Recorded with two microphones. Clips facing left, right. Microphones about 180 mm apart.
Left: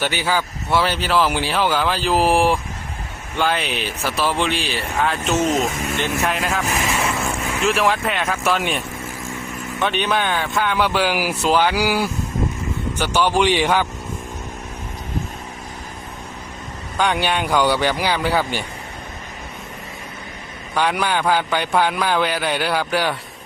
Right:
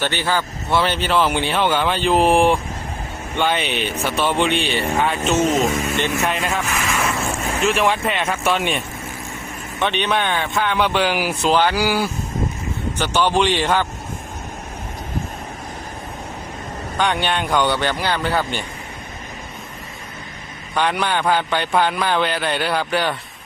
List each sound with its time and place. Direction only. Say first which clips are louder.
0.0 s speech: even; 10° left (ahead or behind)
6.8 s vehicle: even; 25° left (ahead or behind)
7.6 s speech: even; centre (ahead or behind)
9.8 s speech: even; centre (ahead or behind)
17.0 s speech: left 1 dB; 5° left (ahead or behind)
20.7 s speech: even; 5° left (ahead or behind)